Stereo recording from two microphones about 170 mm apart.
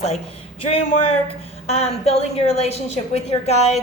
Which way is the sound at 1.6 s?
40° left (ahead or behind).